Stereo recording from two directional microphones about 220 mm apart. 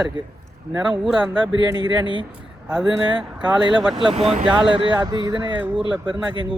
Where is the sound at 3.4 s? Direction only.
20° right (ahead or behind).